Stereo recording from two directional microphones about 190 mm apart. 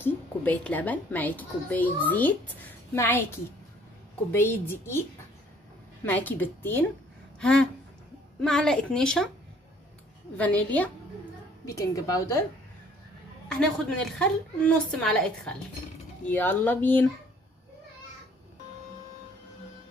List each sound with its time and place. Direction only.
0.0 s a woman's voice: 10° left (ahead or behind)
6.0 s a woman's voice: 10° left (ahead or behind)
7.3 s a sound: 5° left (ahead or behind)
8.4 s a woman's voice: 5° left (ahead or behind)
10.3 s a woman's voice: 10° left (ahead or behind)
13.5 s a woman's voice: 5° left (ahead or behind)